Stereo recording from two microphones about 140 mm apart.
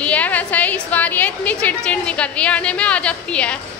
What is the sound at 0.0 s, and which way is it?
A woman's voice, 10° left (ahead or behind).